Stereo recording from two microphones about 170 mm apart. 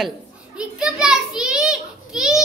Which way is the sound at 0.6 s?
5° right (ahead or behind).